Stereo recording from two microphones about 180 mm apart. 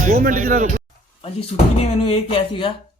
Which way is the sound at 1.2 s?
35° left (ahead or behind).